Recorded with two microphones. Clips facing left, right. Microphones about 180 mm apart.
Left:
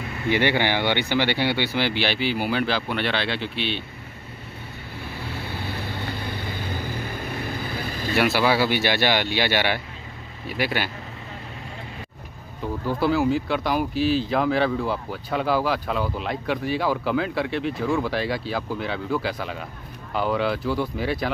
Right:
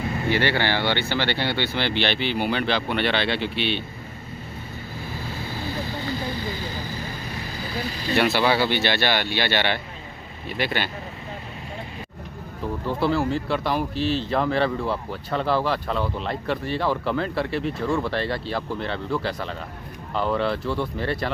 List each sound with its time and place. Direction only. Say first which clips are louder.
0.3 s speech: left 2 dB; 15° left (ahead or behind); by 3.8 s centre (ahead or behind)
5.3 s vehicle: right 2 dB; 60° left (ahead or behind)
8.1 s speech: even; 5° left (ahead or behind)
12.8 s speech: left 2 dB; centre (ahead or behind)